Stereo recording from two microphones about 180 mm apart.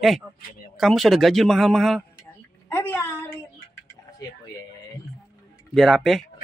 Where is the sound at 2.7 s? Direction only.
10° left (ahead or behind).